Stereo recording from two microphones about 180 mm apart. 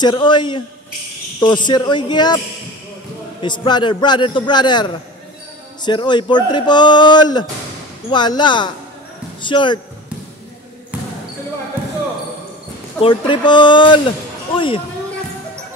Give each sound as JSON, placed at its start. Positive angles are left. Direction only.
{"t": 0.0, "sound": "speech", "side_deg": 25}
{"t": 3.4, "sound": "speech", "side_deg": 25}
{"t": 13.0, "sound": "speech", "side_deg": 25}